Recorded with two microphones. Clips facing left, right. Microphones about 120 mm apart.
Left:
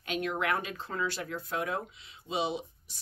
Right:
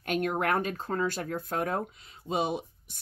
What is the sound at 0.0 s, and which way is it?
Speech, 50° right (ahead or behind).